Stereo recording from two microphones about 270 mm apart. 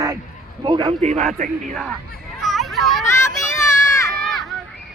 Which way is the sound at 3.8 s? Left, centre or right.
Centre.